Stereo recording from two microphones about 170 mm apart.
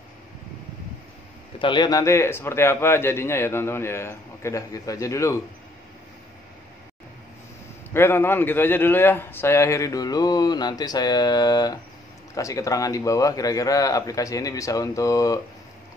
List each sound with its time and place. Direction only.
1.6 s a man's voice: 25° left (ahead or behind)
7.9 s a man's voice: 15° left (ahead or behind)